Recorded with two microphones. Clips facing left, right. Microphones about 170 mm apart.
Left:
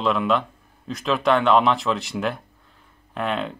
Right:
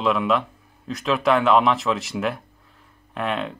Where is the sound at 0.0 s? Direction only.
Centre (ahead or behind).